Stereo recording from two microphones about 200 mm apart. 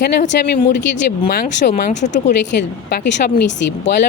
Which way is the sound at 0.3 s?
55° left (ahead or behind).